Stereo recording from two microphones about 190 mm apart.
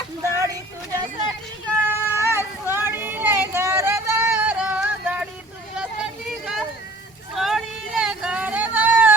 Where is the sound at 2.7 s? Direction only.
10° right (ahead or behind).